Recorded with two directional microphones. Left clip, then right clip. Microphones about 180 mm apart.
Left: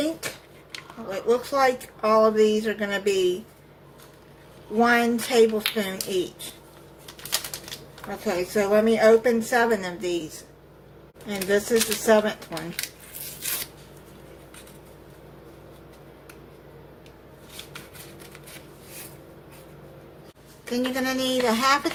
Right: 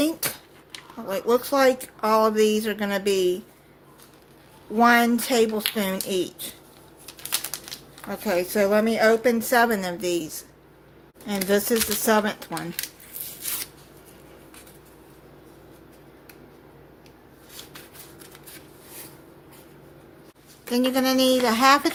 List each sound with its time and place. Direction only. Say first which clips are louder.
0.0 s a sound: right 3 dB; 60° right (ahead or behind)
1.1 s a woman's voice: right 2 dB; 55° right (ahead or behind)
4.8 s a woman's voice: right 2 dB; 60° right (ahead or behind)
8.3 s a woman's voice: right 1 dB; 55° right (ahead or behind)
11.3 s a woman's voice: even; 55° right (ahead or behind)
20.7 s a woman's voice: right 4 dB; 50° right (ahead or behind)